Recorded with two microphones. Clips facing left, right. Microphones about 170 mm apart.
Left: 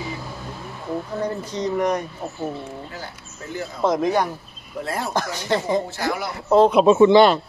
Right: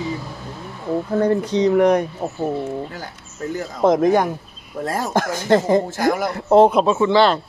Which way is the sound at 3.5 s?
50° right (ahead or behind).